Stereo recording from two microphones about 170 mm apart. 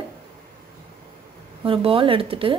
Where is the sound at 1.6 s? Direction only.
30° right (ahead or behind).